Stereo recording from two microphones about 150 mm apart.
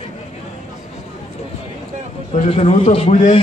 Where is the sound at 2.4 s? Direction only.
40° left (ahead or behind).